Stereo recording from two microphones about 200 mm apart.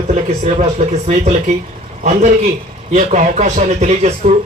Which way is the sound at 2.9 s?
40° right (ahead or behind).